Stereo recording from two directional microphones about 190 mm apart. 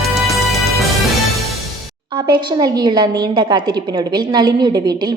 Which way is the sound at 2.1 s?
25° right (ahead or behind).